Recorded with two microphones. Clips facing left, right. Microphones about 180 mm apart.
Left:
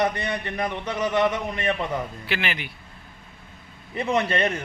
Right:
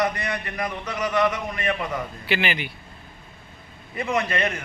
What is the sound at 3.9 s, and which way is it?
Speech, 30° left (ahead or behind).